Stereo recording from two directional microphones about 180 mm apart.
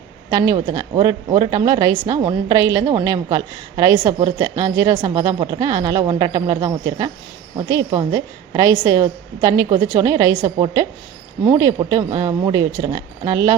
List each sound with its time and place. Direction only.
0.3 s a woman's voice: 20° right (ahead or behind)